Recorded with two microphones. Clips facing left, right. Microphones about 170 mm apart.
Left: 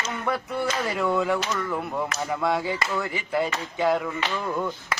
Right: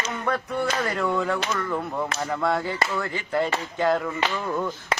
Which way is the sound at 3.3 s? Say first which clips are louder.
Right 1 dB; centre (ahead or behind).